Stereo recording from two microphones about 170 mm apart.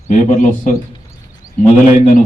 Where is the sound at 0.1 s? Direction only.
50° left (ahead or behind).